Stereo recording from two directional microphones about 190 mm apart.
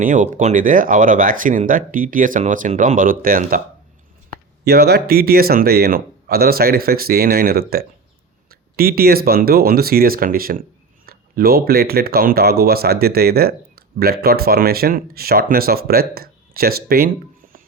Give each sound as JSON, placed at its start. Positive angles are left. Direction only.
{"t": 0.0, "sound": "speech", "side_deg": -45}